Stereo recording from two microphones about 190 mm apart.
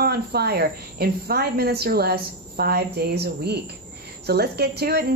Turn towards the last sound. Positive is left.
turn(degrees=-55)  # may be behind; listen again after turning